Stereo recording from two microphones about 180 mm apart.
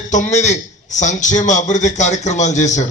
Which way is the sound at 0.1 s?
40° left (ahead or behind).